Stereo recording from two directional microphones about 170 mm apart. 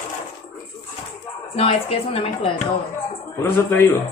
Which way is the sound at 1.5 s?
35° left (ahead or behind).